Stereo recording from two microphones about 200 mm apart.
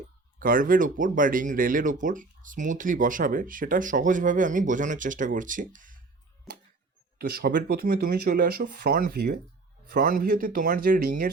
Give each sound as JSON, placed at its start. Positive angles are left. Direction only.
{"t": 0.3, "sound": "speech", "side_deg": -45}
{"t": 7.2, "sound": "speech", "side_deg": -50}